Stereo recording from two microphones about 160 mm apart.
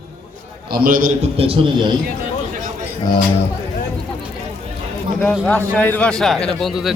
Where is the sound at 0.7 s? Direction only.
60° right (ahead or behind); by 1.6 s 35° right (ahead or behind).